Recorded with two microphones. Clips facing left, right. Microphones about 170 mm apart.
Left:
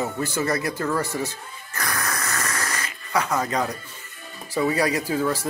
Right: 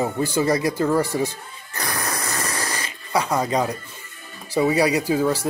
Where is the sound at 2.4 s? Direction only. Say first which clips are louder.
Right 1 dB; 30° right (ahead or behind).